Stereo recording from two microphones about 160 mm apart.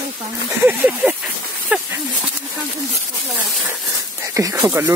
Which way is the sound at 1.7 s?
5° right (ahead or behind).